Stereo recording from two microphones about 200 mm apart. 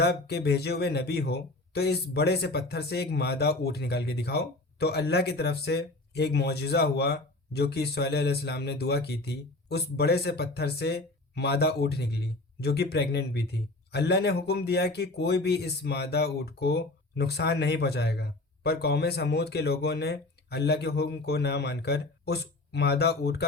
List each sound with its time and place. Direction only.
0.0 s speech: 55° left (ahead or behind)